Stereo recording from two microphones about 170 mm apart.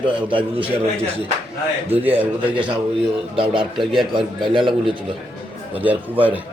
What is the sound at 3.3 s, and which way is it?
A man's voice, 30° right (ahead or behind).